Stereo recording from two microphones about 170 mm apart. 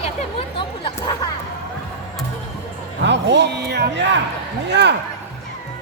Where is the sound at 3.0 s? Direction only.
90° right.